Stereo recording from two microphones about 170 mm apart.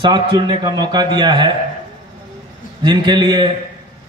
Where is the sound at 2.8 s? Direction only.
25° right (ahead or behind).